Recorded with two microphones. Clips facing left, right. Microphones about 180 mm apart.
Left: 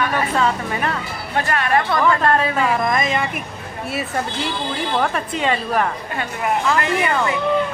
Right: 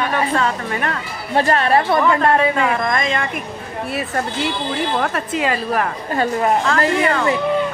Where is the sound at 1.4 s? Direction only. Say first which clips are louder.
Right 4 dB; 35° right (ahead or behind).